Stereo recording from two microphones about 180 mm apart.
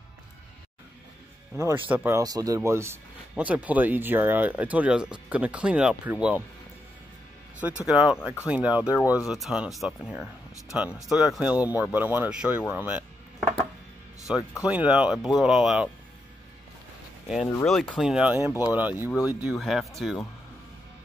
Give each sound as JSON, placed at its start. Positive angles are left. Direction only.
{"t": 1.6, "sound": "speech", "side_deg": -15}
{"t": 7.6, "sound": "speech", "side_deg": -5}
{"t": 9.0, "sound": "speech", "side_deg": 20}
{"t": 9.3, "sound": "speech", "side_deg": 0}
{"t": 14.7, "sound": "speech", "side_deg": -5}
{"t": 17.6, "sound": "speech", "side_deg": 0}
{"t": 18.5, "sound": "speech", "side_deg": 20}
{"t": 18.8, "sound": "speech", "side_deg": -10}